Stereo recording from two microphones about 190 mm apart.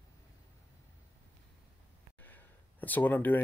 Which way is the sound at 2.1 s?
10° left (ahead or behind).